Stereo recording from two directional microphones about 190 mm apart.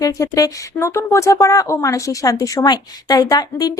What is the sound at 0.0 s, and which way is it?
Speech, 20° left (ahead or behind).